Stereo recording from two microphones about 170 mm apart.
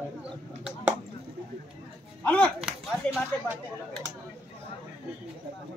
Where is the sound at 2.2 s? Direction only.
5° left (ahead or behind).